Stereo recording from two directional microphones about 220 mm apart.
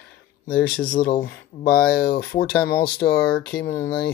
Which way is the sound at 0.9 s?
45° left (ahead or behind).